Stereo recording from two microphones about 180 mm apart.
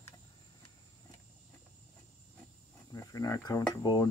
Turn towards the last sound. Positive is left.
turn(degrees=20)  # may be behind; listen again after turning